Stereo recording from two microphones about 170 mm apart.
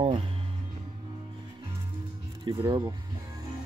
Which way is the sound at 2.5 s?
25° right (ahead or behind).